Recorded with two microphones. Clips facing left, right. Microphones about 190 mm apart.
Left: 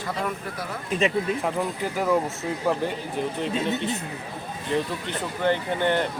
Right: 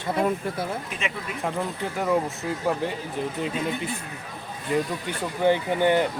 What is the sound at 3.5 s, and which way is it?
Speech, 25° left (ahead or behind).